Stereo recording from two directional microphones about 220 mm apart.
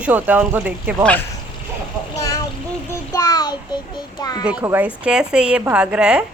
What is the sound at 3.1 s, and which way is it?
Child singing, 15° left (ahead or behind).